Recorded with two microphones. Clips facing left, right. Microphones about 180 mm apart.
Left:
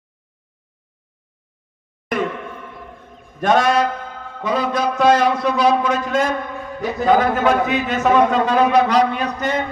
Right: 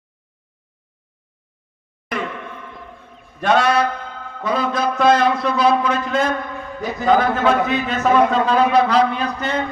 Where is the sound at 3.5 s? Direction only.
45° left (ahead or behind).